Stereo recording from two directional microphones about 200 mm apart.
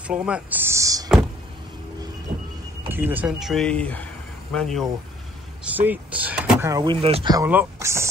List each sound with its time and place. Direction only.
0.1 s speech: 5° right (ahead or behind)
2.3 s vehicle: 35° right (ahead or behind)
2.9 s speech: 10° right (ahead or behind)
5.6 s door: 10° right (ahead or behind)
6.7 s speech: 20° right (ahead or behind)
7.3 s speech: 10° right (ahead or behind)